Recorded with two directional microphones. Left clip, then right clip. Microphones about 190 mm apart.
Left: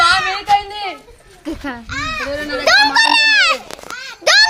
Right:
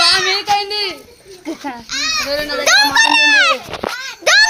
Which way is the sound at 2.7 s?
Centre (ahead or behind).